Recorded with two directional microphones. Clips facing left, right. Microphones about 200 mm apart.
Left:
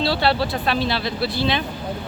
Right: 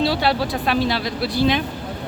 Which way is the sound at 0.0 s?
15° right (ahead or behind).